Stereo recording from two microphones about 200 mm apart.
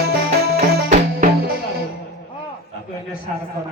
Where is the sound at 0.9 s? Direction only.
40° right (ahead or behind).